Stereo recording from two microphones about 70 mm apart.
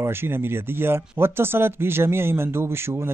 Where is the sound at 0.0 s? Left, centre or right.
Right.